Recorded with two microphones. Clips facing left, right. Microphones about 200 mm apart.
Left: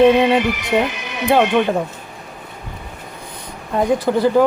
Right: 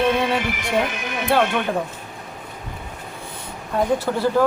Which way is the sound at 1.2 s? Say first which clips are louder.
Left 4 dB; 15° left (ahead or behind).